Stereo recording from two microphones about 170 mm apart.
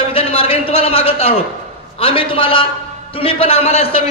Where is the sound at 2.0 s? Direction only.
30° left (ahead or behind).